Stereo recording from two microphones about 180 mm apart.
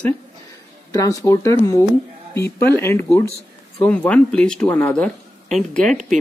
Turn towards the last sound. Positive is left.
turn(degrees=0)  # may be behind; listen again after turning